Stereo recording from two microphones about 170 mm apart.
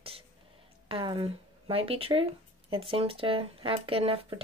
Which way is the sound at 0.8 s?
30° right (ahead or behind).